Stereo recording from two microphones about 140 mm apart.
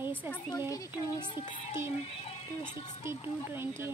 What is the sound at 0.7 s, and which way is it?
Speech, 25° left (ahead or behind).